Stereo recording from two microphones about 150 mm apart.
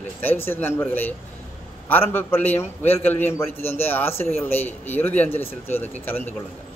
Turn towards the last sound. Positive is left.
turn(degrees=10)  # may be behind; listen again after turning